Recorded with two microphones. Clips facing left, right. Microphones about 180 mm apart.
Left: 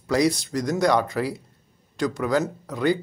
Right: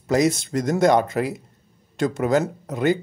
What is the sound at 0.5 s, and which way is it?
Speech, 50° right (ahead or behind).